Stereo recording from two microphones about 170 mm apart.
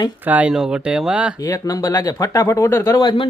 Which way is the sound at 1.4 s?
20° left (ahead or behind).